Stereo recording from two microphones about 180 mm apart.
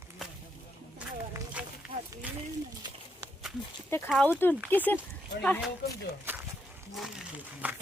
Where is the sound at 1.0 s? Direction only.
5° right (ahead or behind).